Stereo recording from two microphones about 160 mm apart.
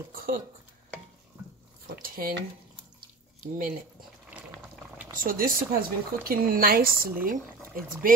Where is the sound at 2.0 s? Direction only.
65° right (ahead or behind).